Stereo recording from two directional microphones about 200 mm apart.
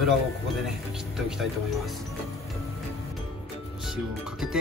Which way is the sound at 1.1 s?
Centre (ahead or behind).